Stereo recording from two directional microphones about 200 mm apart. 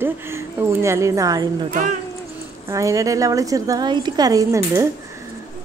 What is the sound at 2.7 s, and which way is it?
Speech, 15° right (ahead or behind).